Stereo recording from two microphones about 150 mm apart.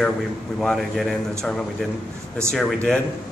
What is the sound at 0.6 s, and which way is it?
Speech, centre (ahead or behind).